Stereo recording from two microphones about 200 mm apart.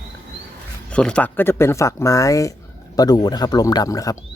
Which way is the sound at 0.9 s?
5° left (ahead or behind).